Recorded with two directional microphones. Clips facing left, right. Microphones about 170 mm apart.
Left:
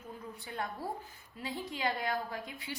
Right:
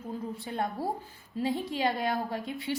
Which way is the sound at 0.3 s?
25° right (ahead or behind).